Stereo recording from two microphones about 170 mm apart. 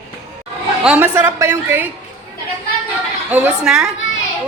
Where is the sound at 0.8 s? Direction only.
10° right (ahead or behind).